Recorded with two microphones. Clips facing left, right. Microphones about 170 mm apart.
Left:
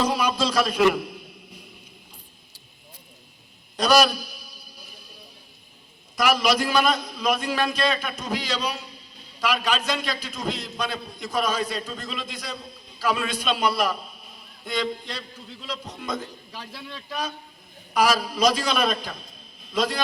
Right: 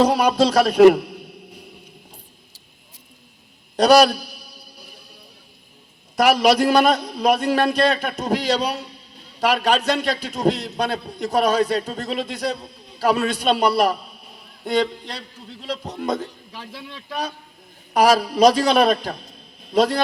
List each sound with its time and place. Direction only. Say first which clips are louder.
0.0 s a man's voice: right 7 dB; 65° right (ahead or behind)
3.8 s a sound: right 6 dB; 65° right (ahead or behind)
6.1 s a man's voice: right 6 dB; 65° right (ahead or behind)
17.9 s a man's voice: right 6 dB; 65° right (ahead or behind)